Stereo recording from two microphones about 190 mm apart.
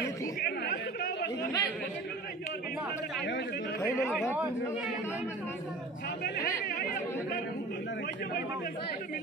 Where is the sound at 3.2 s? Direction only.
65° left (ahead or behind).